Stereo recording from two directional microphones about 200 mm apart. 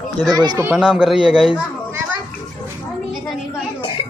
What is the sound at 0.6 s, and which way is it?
Speech, 10° right (ahead or behind).